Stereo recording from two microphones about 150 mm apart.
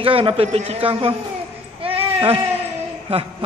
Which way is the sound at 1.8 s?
40° right (ahead or behind).